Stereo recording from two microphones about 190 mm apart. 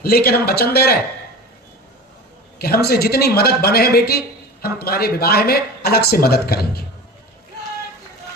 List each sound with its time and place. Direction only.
0.0 s speech: 55° left (ahead or behind)
2.6 s speech: 55° left (ahead or behind)